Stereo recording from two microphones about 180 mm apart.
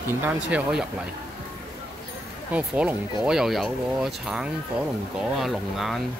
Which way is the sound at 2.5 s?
5° right (ahead or behind).